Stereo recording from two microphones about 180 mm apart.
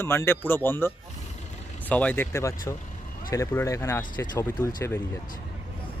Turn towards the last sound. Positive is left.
turn(degrees=15)  # may be behind; listen again after turning